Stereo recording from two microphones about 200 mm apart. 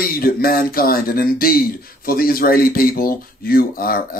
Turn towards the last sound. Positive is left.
turn(degrees=45)  # may be behind; listen again after turning